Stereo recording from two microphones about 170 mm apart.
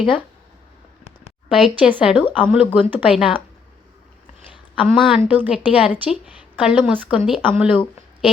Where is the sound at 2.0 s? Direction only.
5° right (ahead or behind).